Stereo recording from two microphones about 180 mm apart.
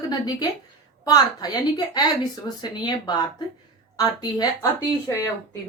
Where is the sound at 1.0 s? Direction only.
20° left (ahead or behind).